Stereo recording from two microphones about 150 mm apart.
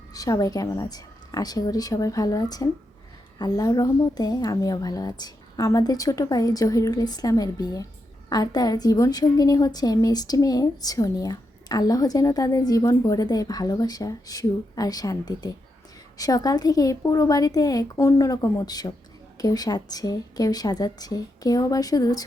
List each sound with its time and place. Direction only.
0.1 s a woman's voice: 25° left (ahead or behind)